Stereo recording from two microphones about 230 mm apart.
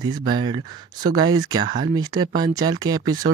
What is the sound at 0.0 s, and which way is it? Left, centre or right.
Speech, centre.